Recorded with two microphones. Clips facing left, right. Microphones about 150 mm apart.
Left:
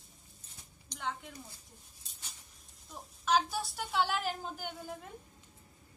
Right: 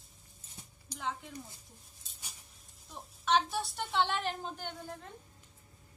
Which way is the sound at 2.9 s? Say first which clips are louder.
Even; centre (ahead or behind).